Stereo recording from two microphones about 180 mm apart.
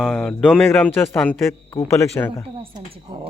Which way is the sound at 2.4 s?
30° right (ahead or behind).